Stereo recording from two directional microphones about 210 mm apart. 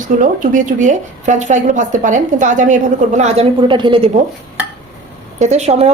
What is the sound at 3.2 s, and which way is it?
A woman's voice, 25° right (ahead or behind).